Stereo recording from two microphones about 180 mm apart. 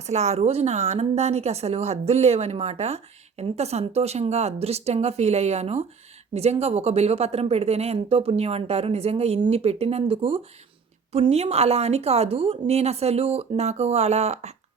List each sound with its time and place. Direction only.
0.0 s speech: 40° right (ahead or behind)